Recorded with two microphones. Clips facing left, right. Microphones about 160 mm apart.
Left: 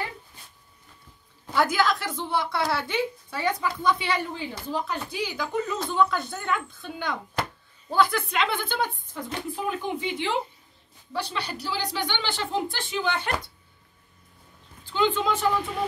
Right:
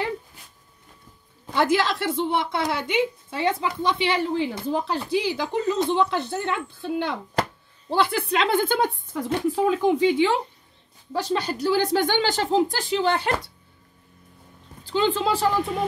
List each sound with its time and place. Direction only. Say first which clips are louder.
1.5 s a woman's voice: right 2 dB; 25° right (ahead or behind); by 8.9 s 45° right (ahead or behind)
9.1 s speech: right 9 dB; 90° right
11.1 s speech: right 6 dB; 45° right (ahead or behind)
14.9 s a woman's voice: right 2 dB; 35° right (ahead or behind)